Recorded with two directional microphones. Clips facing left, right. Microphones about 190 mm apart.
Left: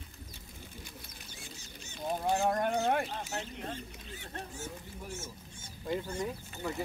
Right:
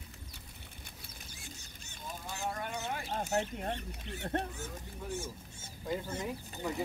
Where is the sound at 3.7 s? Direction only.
65° right (ahead or behind).